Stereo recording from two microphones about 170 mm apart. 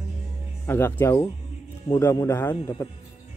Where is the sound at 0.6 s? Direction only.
15° left (ahead or behind).